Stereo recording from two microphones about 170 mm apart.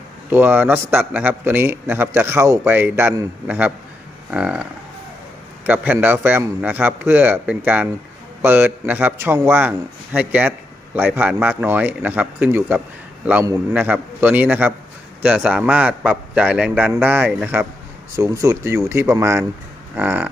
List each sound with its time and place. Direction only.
0.3 s speech: 10° right (ahead or behind)
5.6 s speech: 10° right (ahead or behind)